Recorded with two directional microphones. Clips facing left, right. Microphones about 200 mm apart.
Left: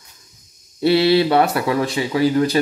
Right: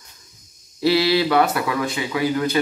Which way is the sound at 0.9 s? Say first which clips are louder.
Left 4 dB; 25° left (ahead or behind).